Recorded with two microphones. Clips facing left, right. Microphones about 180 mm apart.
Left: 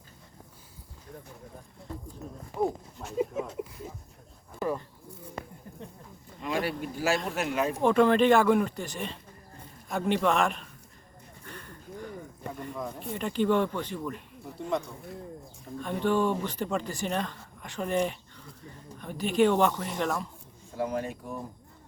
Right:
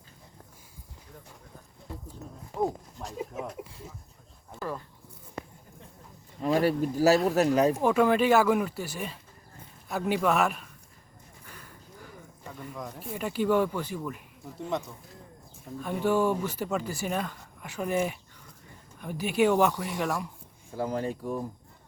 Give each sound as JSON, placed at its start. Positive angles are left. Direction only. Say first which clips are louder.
{"t": 6.4, "sound": "speech", "louder": "right 6 dB", "side_deg": -40}
{"t": 7.8, "sound": "a man's voice", "louder": "left 1 dB", "side_deg": -5}
{"t": 11.4, "sound": "a sound", "louder": "left 7 dB", "side_deg": -5}
{"t": 12.6, "sound": "speech", "louder": "left 1 dB", "side_deg": -5}
{"t": 20.7, "sound": "speech", "louder": "right 1 dB", "side_deg": -30}